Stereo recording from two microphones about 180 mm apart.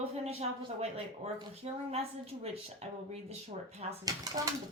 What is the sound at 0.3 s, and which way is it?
A woman's voice, 35° right (ahead or behind).